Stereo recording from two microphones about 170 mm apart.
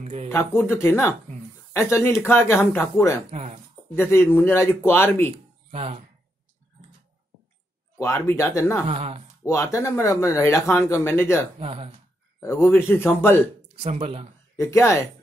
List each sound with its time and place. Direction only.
0.0 s speech: 45° right (ahead or behind)
0.3 s speech: 15° left (ahead or behind)
3.3 s speech: 45° right (ahead or behind)
4.0 s speech: 15° left (ahead or behind)
5.3 s speech: 35° right (ahead or behind)
8.0 s speech: 15° left (ahead or behind)
8.8 s speech: 35° right (ahead or behind)
9.5 s speech: 20° left (ahead or behind)
11.6 s speech: 35° right (ahead or behind)
12.4 s speech: 15° left (ahead or behind)
13.7 s speech: 35° right (ahead or behind)
14.6 s speech: 15° left (ahead or behind)